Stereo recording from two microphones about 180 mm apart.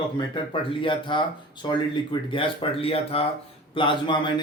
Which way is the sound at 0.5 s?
30° left (ahead or behind).